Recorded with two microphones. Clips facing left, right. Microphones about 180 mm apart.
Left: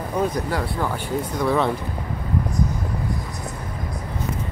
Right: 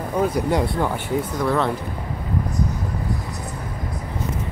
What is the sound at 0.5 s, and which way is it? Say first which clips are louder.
Speech: right 4 dB; 20° right (ahead or behind).